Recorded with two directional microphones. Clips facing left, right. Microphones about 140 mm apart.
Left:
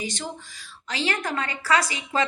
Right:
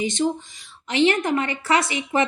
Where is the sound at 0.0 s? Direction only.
20° right (ahead or behind).